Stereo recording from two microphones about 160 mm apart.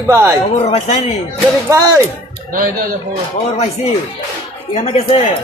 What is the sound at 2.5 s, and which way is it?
Speech, 60° right (ahead or behind).